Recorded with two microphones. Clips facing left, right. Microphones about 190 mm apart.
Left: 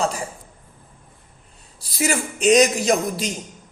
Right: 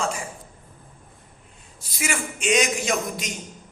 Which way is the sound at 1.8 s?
35° left (ahead or behind).